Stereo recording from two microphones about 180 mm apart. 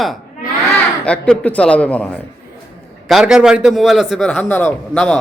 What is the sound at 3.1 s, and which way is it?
A man's voice, 5° right (ahead or behind).